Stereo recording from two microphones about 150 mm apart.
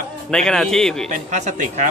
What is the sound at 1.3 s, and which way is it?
Speech, 50° right (ahead or behind).